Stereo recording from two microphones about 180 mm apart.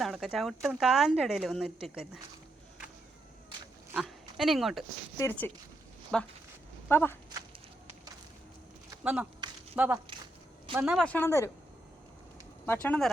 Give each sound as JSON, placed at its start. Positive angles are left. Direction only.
{"t": 0.0, "sound": "speech", "side_deg": 0}
{"t": 3.9, "sound": "speech", "side_deg": -5}
{"t": 5.1, "sound": "speech", "side_deg": 15}
{"t": 6.1, "sound": "speech", "side_deg": 5}
{"t": 9.7, "sound": "speech", "side_deg": -10}
{"t": 12.6, "sound": "speech", "side_deg": 10}